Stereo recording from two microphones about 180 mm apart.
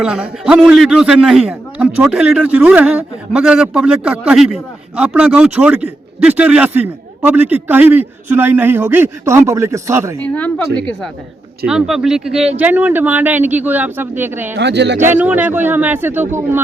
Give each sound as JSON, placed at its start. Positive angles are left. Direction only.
{"t": 0.0, "sound": "a man's voice", "side_deg": -5}
{"t": 11.7, "sound": "a man's voice", "side_deg": -5}
{"t": 14.5, "sound": "speech", "side_deg": -75}
{"t": 15.0, "sound": "a man's voice", "side_deg": -10}